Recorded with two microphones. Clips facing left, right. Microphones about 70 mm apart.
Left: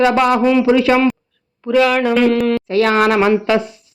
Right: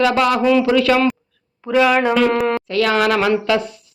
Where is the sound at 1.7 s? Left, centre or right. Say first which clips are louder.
Left 2 dB; centre.